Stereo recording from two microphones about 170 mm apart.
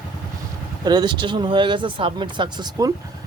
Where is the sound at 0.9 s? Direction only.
25° right (ahead or behind).